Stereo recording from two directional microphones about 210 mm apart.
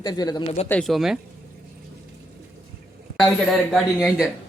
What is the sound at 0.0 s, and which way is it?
Speech, 20° left (ahead or behind).